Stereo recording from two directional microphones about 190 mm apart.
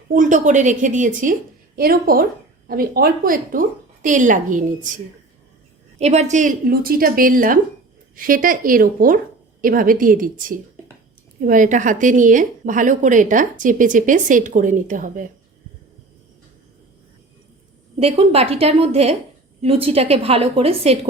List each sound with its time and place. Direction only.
0.1 s a woman's voice: 40° right (ahead or behind)
6.0 s a woman's voice: 35° right (ahead or behind)
18.0 s a woman's voice: 30° right (ahead or behind)